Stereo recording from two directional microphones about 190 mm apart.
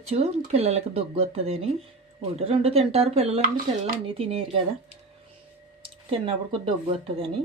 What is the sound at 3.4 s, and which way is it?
Speech, 50° right (ahead or behind).